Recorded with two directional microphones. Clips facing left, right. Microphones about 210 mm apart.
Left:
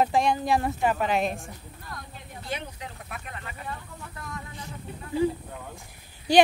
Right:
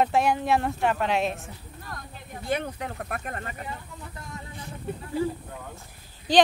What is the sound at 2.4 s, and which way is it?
Speech, 55° right (ahead or behind).